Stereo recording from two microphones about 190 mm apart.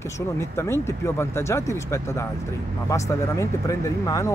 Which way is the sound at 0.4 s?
15° left (ahead or behind).